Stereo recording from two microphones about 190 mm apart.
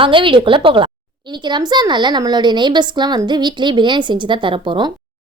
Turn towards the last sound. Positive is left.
turn(degrees=-25)  # may be behind; listen again after turning